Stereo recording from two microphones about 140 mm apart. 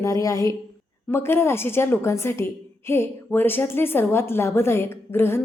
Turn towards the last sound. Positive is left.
turn(degrees=15)  # may be behind; listen again after turning